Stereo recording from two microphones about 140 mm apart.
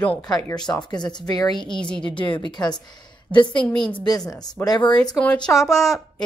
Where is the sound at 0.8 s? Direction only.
30° left (ahead or behind).